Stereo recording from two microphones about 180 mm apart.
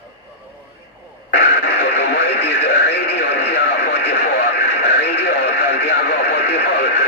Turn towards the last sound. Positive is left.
turn(degrees=70)  # may be behind; listen again after turning